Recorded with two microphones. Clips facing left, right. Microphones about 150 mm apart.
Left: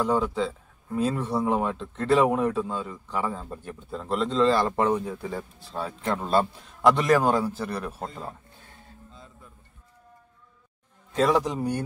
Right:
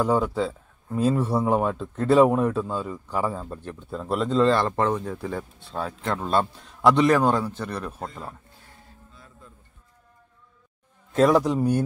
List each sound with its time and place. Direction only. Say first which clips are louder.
0.0 s speech: right 2 dB; 5° right (ahead or behind)
3.4 s speech: right 2 dB; 5° left (ahead or behind)
4.1 s speech: right 2 dB; 5° right (ahead or behind)
4.6 s speech: even; 10° left (ahead or behind)
5.1 s speech: right 2 dB; centre (ahead or behind)
9.1 s a sound: right 1 dB; 20° left (ahead or behind)
11.1 s a man's voice: right 4 dB; 5° right (ahead or behind)